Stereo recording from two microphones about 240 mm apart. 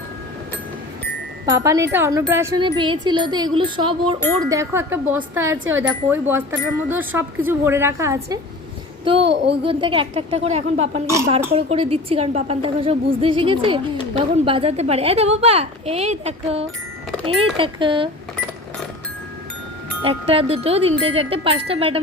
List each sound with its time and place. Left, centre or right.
1.5 s a woman's voice: centre
9.2 s a child's voice: right
9.6 s a woman's voice: right
11.0 s speech: centre
11.5 s a woman's voice: right
20.0 s a woman's voice: right